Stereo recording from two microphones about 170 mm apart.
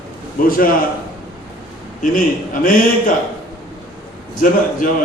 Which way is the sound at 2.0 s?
50° left (ahead or behind).